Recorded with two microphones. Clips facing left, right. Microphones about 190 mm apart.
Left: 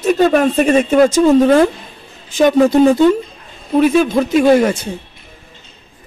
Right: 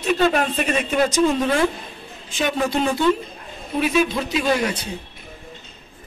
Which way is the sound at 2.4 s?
40° left (ahead or behind).